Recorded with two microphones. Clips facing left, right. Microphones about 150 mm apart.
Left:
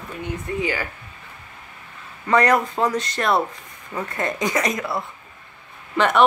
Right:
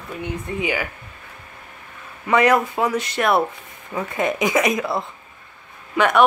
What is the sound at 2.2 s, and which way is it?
Speech, 10° right (ahead or behind).